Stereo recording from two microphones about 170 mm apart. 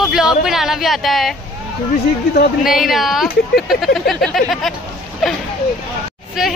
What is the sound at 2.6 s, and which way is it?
Speech, centre (ahead or behind).